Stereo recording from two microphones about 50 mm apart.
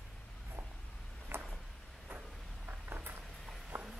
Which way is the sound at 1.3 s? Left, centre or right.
Right.